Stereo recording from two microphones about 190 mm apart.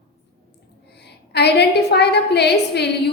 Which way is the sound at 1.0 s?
60° left (ahead or behind).